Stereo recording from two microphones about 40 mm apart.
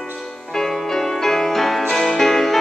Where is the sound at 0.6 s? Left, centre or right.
Centre.